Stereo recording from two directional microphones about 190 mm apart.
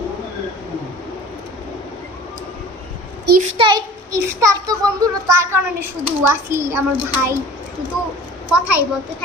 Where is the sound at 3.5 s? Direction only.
25° right (ahead or behind).